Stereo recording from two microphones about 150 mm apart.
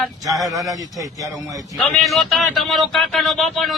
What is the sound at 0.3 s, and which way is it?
Speech, centre (ahead or behind).